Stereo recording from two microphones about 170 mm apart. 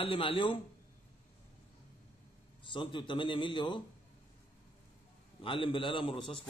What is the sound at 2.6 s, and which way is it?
A man's voice, 30° left (ahead or behind).